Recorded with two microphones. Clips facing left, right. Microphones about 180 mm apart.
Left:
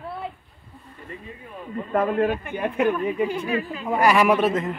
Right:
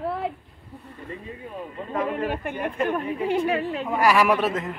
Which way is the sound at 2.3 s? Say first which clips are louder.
Left 2 dB; 65° right (ahead or behind).